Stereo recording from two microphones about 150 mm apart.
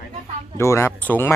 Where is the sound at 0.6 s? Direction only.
20° left (ahead or behind).